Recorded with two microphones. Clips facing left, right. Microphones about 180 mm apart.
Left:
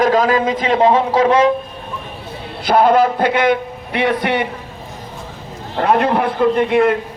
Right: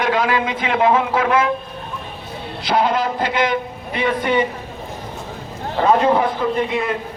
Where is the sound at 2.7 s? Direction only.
50° left (ahead or behind); by 4.4 s 70° left (ahead or behind).